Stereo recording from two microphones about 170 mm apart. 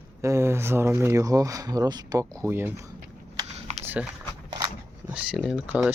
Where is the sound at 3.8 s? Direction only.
10° right (ahead or behind).